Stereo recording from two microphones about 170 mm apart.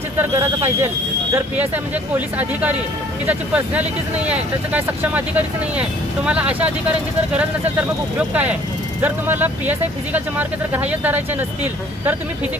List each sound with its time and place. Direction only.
0.2 s speech: 15° right (ahead or behind)
2.1 s speech: 10° right (ahead or behind)
8.3 s speech: 10° right (ahead or behind)